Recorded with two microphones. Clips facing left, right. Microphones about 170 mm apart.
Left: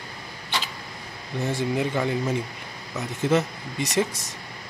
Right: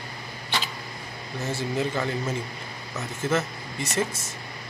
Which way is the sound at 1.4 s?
15° left (ahead or behind).